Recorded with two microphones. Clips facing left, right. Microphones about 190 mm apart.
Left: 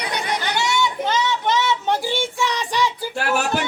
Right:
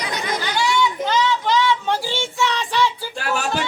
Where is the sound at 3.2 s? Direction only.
60° left (ahead or behind).